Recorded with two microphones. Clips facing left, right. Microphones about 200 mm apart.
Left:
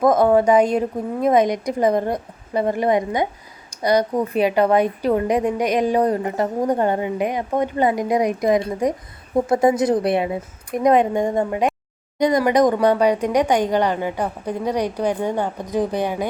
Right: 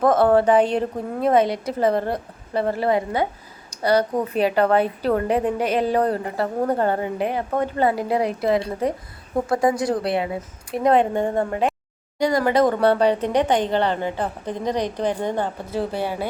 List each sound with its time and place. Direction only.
0.0 s a woman's voice: 10° left (ahead or behind)